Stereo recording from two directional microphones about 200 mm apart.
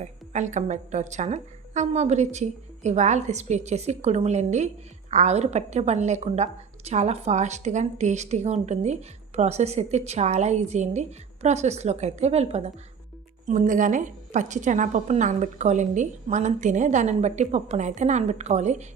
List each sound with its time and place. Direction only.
0.0 s a woman's voice: 35° right (ahead or behind)